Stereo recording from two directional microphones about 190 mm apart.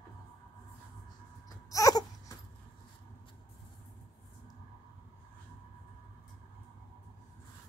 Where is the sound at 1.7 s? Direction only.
20° left (ahead or behind).